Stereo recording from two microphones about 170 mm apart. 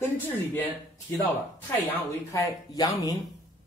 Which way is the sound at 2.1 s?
20° left (ahead or behind).